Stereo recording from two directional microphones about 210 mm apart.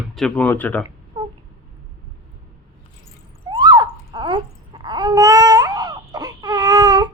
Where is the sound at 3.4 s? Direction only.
20° right (ahead or behind).